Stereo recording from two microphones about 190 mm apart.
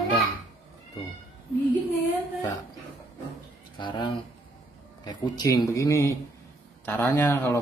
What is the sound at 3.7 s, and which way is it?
Speech, 25° left (ahead or behind).